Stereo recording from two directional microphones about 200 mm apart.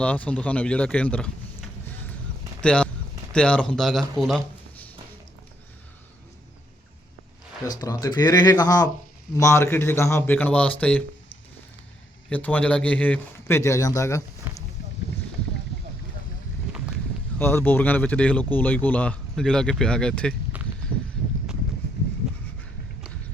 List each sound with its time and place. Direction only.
0.0 s speech: 5° left (ahead or behind)
2.6 s speech: 5° left (ahead or behind)
7.6 s speech: 20° left (ahead or behind)
12.3 s speech: 5° left (ahead or behind)
14.5 s a sound: 10° right (ahead or behind)
17.3 s speech: 10° left (ahead or behind)
20.5 s a sound: 10° right (ahead or behind)